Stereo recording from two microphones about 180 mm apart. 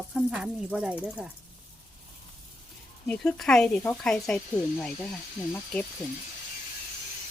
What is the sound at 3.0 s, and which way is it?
Speech, 5° left (ahead or behind).